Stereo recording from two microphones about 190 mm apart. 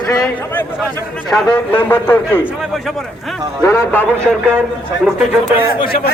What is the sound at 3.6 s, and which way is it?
Speech, 10° left (ahead or behind).